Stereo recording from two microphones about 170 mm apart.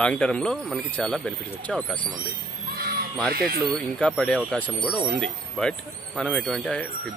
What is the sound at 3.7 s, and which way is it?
Speech, 5° left (ahead or behind).